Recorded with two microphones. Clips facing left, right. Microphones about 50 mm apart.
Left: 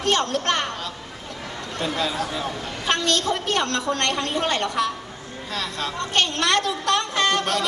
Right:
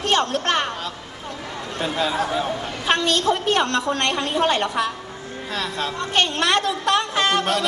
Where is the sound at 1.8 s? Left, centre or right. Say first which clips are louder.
Right 3 dB; centre.